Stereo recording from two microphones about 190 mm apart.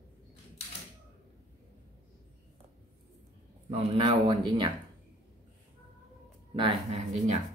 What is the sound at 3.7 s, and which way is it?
Speech, 30° right (ahead or behind).